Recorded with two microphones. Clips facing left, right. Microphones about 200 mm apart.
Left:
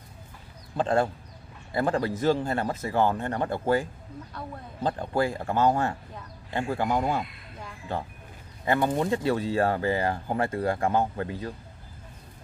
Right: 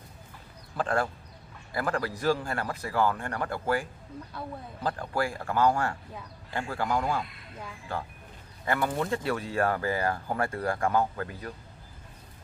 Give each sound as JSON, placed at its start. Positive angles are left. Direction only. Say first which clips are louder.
{"t": 0.7, "sound": "speech", "louder": "left 4 dB", "side_deg": 25}
{"t": 4.8, "sound": "speech", "louder": "left 4 dB", "side_deg": 25}